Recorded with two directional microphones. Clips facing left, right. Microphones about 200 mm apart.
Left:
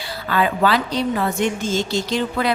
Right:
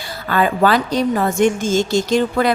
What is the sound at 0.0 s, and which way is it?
A woman's voice, 45° right (ahead or behind).